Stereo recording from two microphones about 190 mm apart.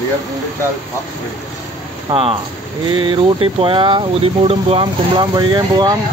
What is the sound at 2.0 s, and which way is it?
Speech, 30° right (ahead or behind).